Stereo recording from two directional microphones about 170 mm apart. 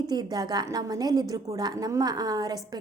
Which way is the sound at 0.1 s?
25° right (ahead or behind).